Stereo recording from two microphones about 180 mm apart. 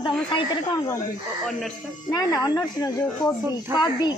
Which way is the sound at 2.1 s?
20° left (ahead or behind).